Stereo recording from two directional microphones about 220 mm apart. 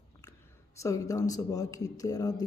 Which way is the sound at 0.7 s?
15° left (ahead or behind).